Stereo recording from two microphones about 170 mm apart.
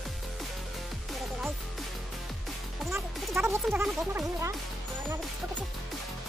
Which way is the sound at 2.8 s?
15° right (ahead or behind).